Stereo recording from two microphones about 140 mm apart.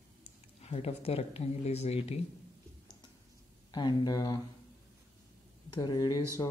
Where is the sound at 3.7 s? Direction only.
30° left (ahead or behind).